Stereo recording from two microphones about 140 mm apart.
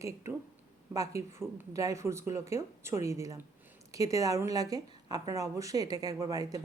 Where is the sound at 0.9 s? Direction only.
20° right (ahead or behind).